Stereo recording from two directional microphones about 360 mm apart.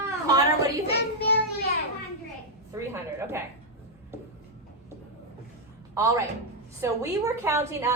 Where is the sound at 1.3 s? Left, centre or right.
Left.